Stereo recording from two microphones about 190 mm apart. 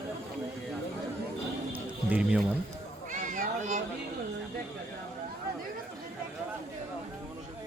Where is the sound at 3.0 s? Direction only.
45° right (ahead or behind).